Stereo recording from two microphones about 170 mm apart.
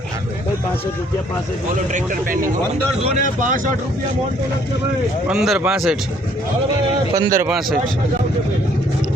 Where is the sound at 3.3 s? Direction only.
50° right (ahead or behind).